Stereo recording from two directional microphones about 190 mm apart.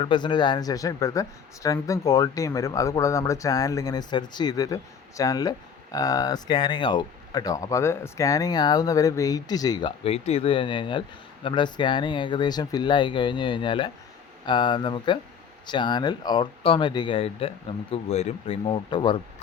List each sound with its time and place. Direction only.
0.0 s speech: 25° left (ahead or behind)